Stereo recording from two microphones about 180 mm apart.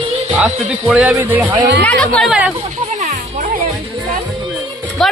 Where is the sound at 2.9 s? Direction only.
45° right (ahead or behind).